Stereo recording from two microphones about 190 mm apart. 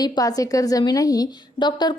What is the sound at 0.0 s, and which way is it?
A woman's voice, 20° left (ahead or behind).